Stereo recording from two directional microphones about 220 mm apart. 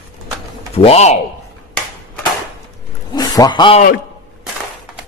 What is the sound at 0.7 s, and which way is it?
Speech, 30° left (ahead or behind).